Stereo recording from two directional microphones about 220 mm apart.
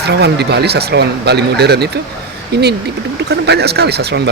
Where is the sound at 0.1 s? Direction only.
50° right (ahead or behind).